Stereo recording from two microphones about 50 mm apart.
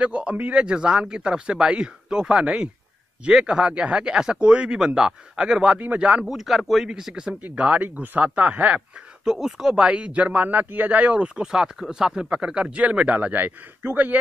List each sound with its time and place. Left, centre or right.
0.0 s a man's voice: right
6.2 s a man's voice: centre
7.4 s a man's voice: right
9.2 s a man's voice: centre
11.4 s speech: centre
12.7 s a man's voice: right